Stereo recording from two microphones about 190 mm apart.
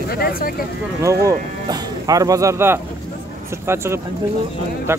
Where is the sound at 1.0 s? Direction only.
15° right (ahead or behind).